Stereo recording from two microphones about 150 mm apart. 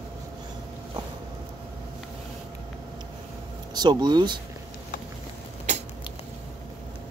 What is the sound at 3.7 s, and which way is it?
Speech, 30° right (ahead or behind).